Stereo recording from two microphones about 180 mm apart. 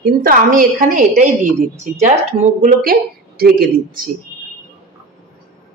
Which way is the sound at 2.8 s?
55° right (ahead or behind).